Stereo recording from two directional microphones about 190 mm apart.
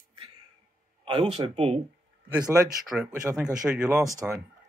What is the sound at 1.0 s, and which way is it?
Speech, 30° right (ahead or behind).